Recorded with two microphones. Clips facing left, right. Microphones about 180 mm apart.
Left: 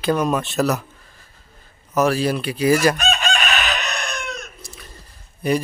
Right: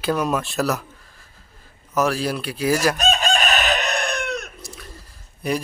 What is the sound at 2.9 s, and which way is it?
Chicken, 40° right (ahead or behind).